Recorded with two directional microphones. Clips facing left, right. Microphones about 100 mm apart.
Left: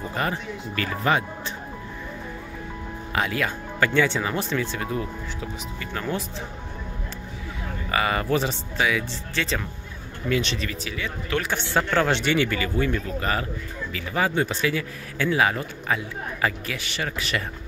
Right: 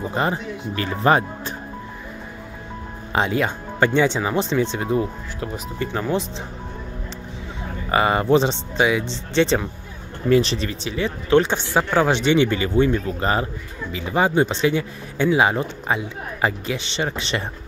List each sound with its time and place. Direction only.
0.1 s speech: 25° right (ahead or behind)
3.1 s speech: 25° right (ahead or behind)
6.0 s speech: 20° right (ahead or behind)
7.9 s speech: 30° right (ahead or behind)
11.7 s speech: 15° right (ahead or behind)